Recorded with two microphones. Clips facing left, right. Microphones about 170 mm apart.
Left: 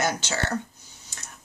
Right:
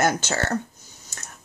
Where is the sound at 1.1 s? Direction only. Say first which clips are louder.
Right 3 dB; 45° right (ahead or behind).